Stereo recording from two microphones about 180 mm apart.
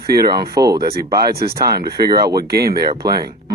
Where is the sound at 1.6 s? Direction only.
25° right (ahead or behind).